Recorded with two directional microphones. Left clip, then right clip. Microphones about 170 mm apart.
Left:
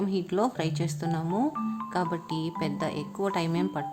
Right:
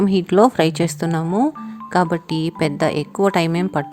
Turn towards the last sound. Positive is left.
turn(degrees=-40)  # may be behind; listen again after turning